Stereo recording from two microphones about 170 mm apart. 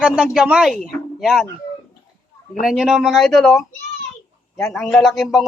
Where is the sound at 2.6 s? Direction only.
5° right (ahead or behind).